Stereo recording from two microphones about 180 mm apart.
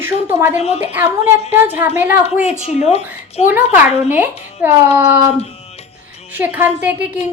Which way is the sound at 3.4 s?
10° right (ahead or behind).